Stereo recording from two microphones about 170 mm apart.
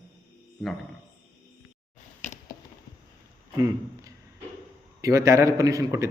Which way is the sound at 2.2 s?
15° left (ahead or behind).